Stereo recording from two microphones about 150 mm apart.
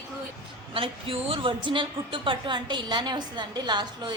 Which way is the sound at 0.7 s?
35° right (ahead or behind).